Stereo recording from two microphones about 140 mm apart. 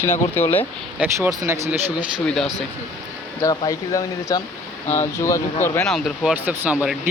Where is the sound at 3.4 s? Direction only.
30° left (ahead or behind).